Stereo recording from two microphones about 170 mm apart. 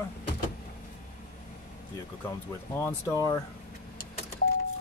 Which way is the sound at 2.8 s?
15° left (ahead or behind).